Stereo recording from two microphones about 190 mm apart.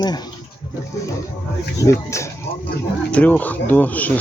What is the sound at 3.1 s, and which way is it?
Speech, 10° left (ahead or behind).